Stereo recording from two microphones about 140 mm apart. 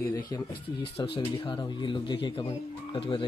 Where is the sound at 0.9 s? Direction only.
35° left (ahead or behind).